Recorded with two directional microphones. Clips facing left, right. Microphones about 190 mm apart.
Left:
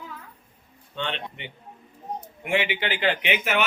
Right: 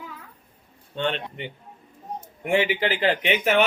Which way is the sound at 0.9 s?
45° right (ahead or behind).